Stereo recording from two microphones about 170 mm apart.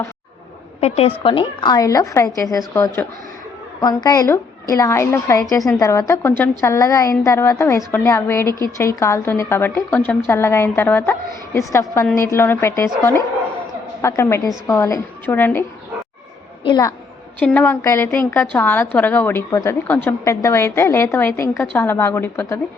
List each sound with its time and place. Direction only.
0.8 s a woman's voice: 40° left (ahead or behind); by 15.6 s 10° left (ahead or behind)
16.6 s a woman's voice: 25° left (ahead or behind)
17.4 s a woman's voice: 10° left (ahead or behind)